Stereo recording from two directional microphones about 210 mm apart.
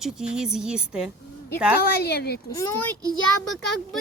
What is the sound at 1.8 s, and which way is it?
Speech, 50° left (ahead or behind).